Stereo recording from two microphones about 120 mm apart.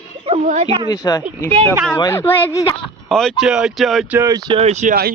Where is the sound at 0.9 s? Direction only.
30° left (ahead or behind).